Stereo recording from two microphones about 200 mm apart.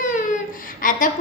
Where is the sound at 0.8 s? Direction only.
45° left (ahead or behind).